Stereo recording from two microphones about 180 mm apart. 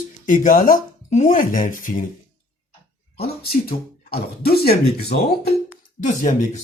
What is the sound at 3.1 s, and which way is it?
Speech, 60° left (ahead or behind).